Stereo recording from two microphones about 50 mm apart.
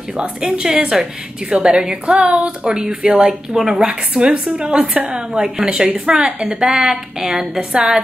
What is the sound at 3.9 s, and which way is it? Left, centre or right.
A woman's voice, centre.